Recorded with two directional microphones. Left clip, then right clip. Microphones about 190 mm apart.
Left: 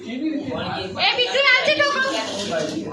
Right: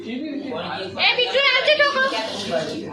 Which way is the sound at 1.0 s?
Centre (ahead or behind).